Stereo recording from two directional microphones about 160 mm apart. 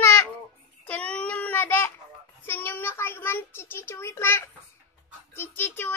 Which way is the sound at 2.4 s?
15° left (ahead or behind).